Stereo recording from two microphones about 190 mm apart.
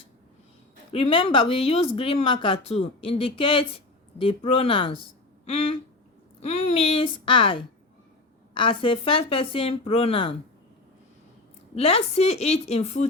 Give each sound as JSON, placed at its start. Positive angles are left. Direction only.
{"t": 0.9, "sound": "a woman's voice", "side_deg": 30}
{"t": 11.7, "sound": "a woman's voice", "side_deg": 30}